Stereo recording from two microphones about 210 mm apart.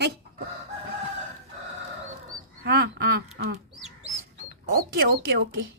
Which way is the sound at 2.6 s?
50° right (ahead or behind).